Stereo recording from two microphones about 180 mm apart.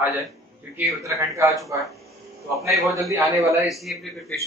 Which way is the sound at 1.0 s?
15° right (ahead or behind).